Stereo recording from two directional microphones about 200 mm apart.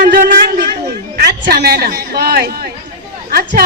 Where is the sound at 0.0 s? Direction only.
45° right (ahead or behind).